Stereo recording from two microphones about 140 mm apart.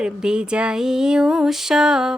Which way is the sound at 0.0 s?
5° right (ahead or behind).